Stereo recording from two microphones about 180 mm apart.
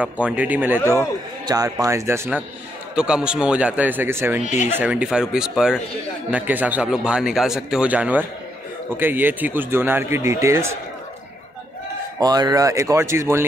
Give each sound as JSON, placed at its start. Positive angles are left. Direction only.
{"t": 0.0, "sound": "speech", "side_deg": -5}
{"t": 4.4, "sound": "speech", "side_deg": 40}
{"t": 4.6, "sound": "speech", "side_deg": -10}
{"t": 12.2, "sound": "speech", "side_deg": -20}